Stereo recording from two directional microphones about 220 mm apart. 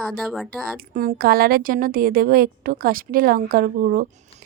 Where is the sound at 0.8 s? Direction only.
40° right (ahead or behind).